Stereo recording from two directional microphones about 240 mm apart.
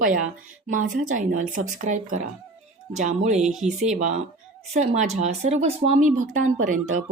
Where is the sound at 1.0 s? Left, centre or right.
Right.